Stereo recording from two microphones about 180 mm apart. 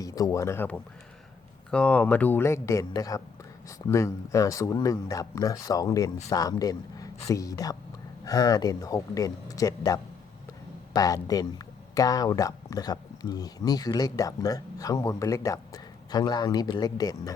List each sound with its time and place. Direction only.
0.0 s speech: 20° left (ahead or behind)